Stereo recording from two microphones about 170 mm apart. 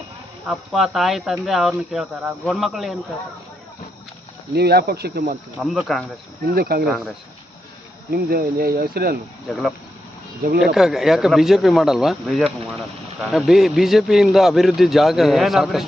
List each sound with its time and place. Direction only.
0.4 s a man's voice: centre (ahead or behind)
4.5 s speech: 70° right (ahead or behind)
5.5 s a man's voice: centre (ahead or behind)
6.5 s speech: 65° right (ahead or behind)
6.8 s a man's voice: centre (ahead or behind)
8.1 s speech: 60° right (ahead or behind)
9.5 s a man's voice: centre (ahead or behind)
10.8 s a man's voice: centre (ahead or behind)